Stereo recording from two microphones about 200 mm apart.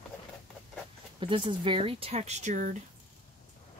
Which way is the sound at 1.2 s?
25° right (ahead or behind).